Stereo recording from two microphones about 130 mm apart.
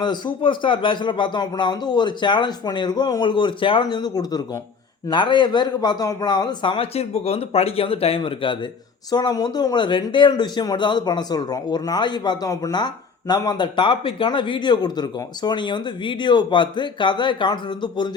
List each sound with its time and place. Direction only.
0.0 s speech: 35° left (ahead or behind)